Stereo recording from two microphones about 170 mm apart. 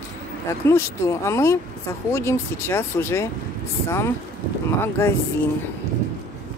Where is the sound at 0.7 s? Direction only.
15° left (ahead or behind).